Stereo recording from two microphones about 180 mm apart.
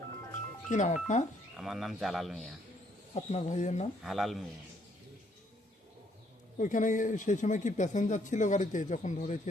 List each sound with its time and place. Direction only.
0.7 s speech: 40° left (ahead or behind)
1.5 s speech: centre (ahead or behind)
3.2 s speech: 40° left (ahead or behind)
4.0 s speech: centre (ahead or behind)
6.6 s speech: 45° left (ahead or behind)